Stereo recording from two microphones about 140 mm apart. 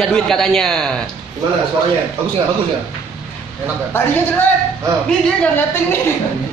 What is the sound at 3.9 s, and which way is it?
Speech, 15° left (ahead or behind).